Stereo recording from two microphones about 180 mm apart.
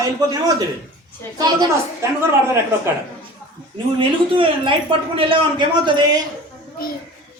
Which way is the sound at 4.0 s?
30° right (ahead or behind).